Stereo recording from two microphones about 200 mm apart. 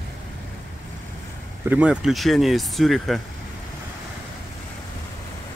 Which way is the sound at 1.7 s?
5° right (ahead or behind).